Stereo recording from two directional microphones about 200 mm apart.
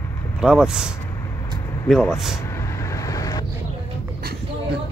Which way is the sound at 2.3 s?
15° left (ahead or behind).